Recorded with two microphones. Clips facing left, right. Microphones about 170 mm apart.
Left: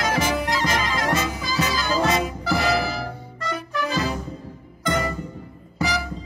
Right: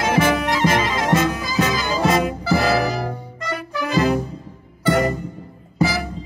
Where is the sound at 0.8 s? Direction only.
20° right (ahead or behind).